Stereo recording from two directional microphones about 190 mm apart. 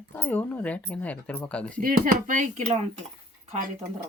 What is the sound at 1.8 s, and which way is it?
Cutlery, 45° right (ahead or behind).